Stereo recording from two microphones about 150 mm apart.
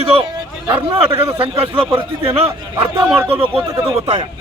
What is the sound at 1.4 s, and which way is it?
A man's voice, 40° right (ahead or behind).